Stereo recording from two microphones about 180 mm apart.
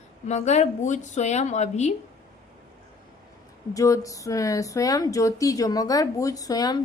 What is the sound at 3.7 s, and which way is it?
A woman's voice, 20° left (ahead or behind).